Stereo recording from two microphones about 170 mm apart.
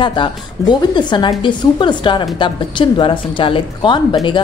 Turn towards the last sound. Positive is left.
turn(degrees=25)  # may be behind; listen again after turning